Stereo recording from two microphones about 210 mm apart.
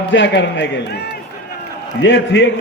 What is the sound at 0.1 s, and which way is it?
A man's voice, 60° left (ahead or behind).